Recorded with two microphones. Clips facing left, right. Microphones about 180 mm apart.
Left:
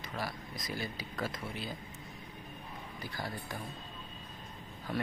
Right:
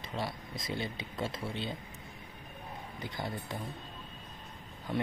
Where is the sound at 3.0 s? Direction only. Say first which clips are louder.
Right 2 dB; 20° right (ahead or behind).